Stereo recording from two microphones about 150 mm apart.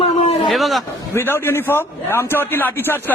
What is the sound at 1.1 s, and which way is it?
A man's voice, 15° left (ahead or behind).